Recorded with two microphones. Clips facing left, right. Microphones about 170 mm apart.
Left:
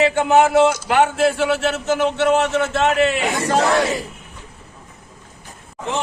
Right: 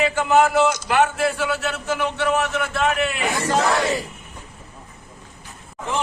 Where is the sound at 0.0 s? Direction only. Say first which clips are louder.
Left 3 dB; 20° left (ahead or behind).